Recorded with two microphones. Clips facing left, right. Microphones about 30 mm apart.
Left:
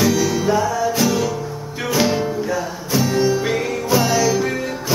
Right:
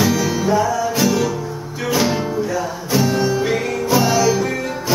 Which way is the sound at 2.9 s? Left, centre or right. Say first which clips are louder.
Even; centre.